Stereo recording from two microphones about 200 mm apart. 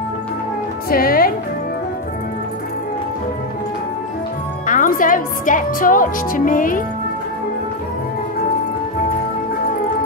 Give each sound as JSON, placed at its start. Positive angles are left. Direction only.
{"t": 0.8, "sound": "music", "side_deg": 45}
{"t": 4.6, "sound": "a woman's voice", "side_deg": 40}